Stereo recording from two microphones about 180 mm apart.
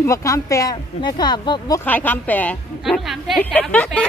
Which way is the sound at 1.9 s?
10° left (ahead or behind).